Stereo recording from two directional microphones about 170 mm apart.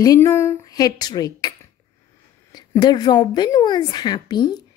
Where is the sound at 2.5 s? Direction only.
25° left (ahead or behind).